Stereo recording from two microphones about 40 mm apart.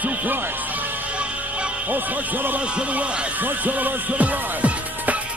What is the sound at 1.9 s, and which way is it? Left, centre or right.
Speech, right.